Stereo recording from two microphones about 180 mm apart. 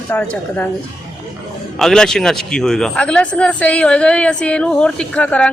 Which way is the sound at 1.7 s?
5° left (ahead or behind).